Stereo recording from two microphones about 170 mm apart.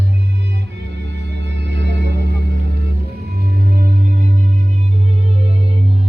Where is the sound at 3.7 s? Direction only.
50° right (ahead or behind).